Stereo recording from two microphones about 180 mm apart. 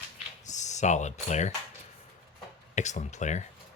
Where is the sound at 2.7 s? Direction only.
40° left (ahead or behind).